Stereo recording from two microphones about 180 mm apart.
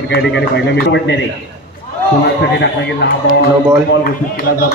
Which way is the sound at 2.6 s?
65° left (ahead or behind).